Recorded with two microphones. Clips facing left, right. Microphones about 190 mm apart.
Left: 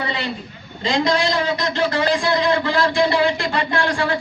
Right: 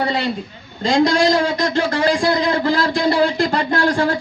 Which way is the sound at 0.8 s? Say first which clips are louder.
Right 4 dB; 45° right (ahead or behind).